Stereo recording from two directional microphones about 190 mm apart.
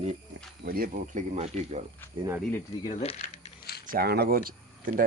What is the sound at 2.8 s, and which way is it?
Speech, 30° left (ahead or behind).